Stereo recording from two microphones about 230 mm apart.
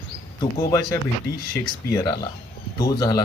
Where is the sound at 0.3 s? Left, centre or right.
Centre.